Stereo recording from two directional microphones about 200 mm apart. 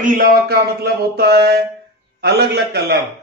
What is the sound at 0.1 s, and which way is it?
Speech, 50° right (ahead or behind).